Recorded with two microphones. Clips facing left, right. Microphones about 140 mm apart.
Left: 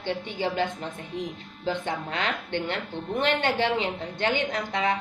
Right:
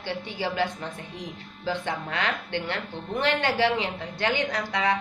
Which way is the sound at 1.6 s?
20° left (ahead or behind).